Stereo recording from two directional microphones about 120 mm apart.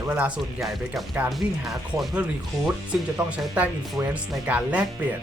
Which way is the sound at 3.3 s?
10° right (ahead or behind).